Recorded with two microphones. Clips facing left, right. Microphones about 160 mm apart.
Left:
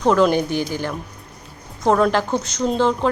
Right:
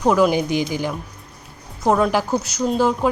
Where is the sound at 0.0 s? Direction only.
10° right (ahead or behind).